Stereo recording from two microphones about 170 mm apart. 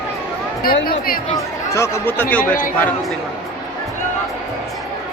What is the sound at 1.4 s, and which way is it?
Speech, 15° left (ahead or behind).